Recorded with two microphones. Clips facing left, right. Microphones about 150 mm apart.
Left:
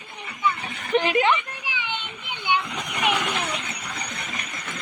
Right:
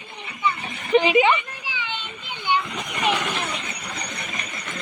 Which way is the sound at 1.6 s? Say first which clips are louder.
Left 1 dB; 15° left (ahead or behind).